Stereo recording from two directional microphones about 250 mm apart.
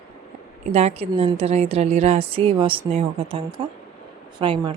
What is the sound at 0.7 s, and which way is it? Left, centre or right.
Speech, right.